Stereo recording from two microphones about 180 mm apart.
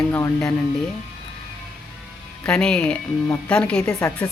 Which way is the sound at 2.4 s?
5° left (ahead or behind).